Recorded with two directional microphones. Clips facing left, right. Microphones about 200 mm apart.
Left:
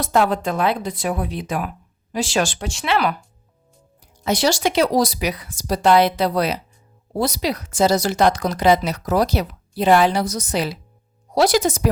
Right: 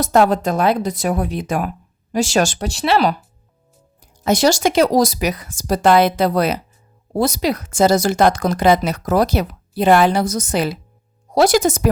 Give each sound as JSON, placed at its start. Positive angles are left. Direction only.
{"t": 0.0, "sound": "speech", "side_deg": -40}
{"t": 4.2, "sound": "speech", "side_deg": -45}